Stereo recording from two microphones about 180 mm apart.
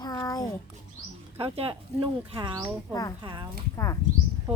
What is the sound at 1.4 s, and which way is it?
Speech, 30° right (ahead or behind).